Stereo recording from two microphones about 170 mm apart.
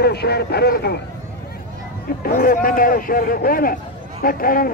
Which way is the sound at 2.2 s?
55° left (ahead or behind).